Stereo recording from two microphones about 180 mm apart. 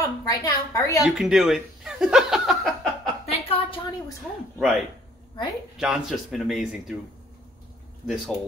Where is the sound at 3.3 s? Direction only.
30° left (ahead or behind).